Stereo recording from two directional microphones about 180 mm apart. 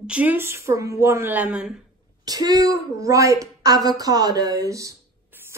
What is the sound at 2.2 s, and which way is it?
A woman's voice, 20° right (ahead or behind).